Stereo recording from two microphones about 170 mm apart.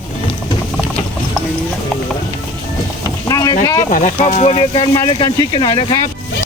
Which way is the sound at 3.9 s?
50° left (ahead or behind).